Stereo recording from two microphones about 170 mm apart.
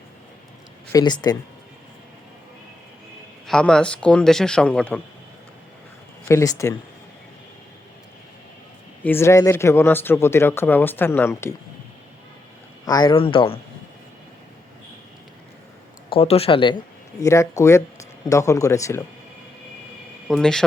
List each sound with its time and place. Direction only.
0.9 s speech: 20° left (ahead or behind)
3.4 s a man's voice: 5° left (ahead or behind)
6.2 s speech: 15° left (ahead or behind)
9.0 s speech: 15° left (ahead or behind)
12.8 s speech: 25° left (ahead or behind)
16.0 s speech: 35° left (ahead or behind)
17.2 s speech: 15° left (ahead or behind)
20.2 s a man's voice: centre (ahead or behind)